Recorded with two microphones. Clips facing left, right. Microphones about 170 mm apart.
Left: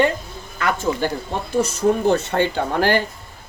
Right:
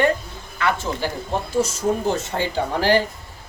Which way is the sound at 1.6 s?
65° left (ahead or behind).